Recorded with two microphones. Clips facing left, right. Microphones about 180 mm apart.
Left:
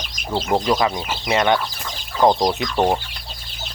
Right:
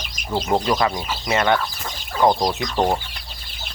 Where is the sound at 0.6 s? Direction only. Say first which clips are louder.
Left 1 dB; 15° left (ahead or behind).